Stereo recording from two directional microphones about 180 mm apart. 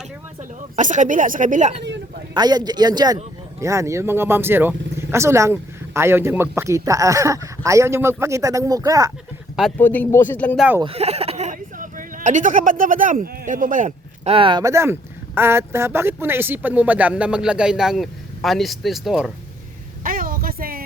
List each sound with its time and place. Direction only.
0.8 s a woman's voice: 45° right (ahead or behind)
1.8 s a sound: 75° right (ahead or behind)
2.3 s speech: 25° right (ahead or behind)
9.7 s speech: 10° left (ahead or behind)
10.8 s speech: 35° right (ahead or behind)
14.3 s speech: 25° right (ahead or behind); by 19.3 s centre (ahead or behind)
20.1 s music: 50° right (ahead or behind)